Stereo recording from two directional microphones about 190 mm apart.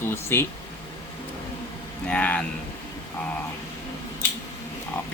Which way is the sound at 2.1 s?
5° left (ahead or behind).